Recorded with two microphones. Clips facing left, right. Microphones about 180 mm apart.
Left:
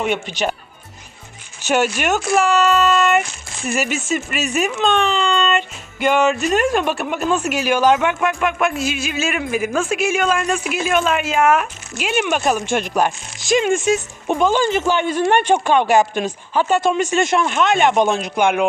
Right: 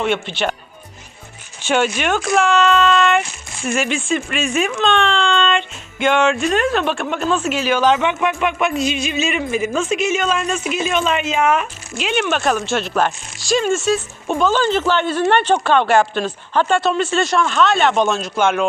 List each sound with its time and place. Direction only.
0.0 s speech: 10° left (ahead or behind)
1.6 s speech: 10° left (ahead or behind)